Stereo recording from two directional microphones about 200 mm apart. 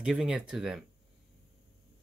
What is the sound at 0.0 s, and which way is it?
Speech, 5° right (ahead or behind).